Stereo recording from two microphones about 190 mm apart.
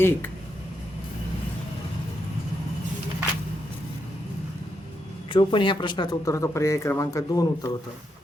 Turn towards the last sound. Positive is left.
turn(degrees=20)  # may be behind; listen again after turning